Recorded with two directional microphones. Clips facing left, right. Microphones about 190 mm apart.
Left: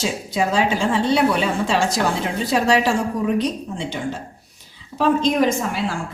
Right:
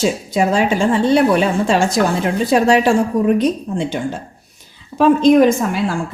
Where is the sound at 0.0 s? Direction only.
50° right (ahead or behind).